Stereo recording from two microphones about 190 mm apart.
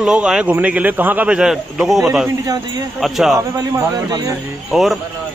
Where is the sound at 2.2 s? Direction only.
20° right (ahead or behind).